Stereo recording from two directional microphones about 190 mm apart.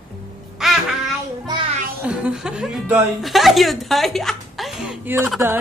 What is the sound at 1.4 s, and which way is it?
Music, 25° right (ahead or behind).